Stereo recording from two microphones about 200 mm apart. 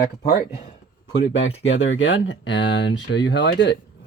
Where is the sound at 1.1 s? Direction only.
65° left (ahead or behind).